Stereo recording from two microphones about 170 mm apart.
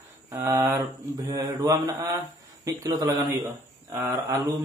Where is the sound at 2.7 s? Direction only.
20° right (ahead or behind).